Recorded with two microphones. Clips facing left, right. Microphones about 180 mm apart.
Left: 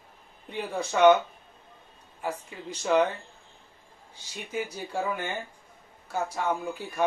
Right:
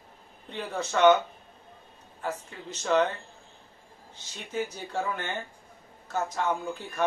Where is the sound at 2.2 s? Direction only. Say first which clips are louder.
Left 1 dB; 10° left (ahead or behind).